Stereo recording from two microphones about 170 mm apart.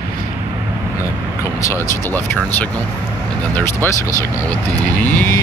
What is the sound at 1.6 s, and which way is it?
Speech, 15° left (ahead or behind).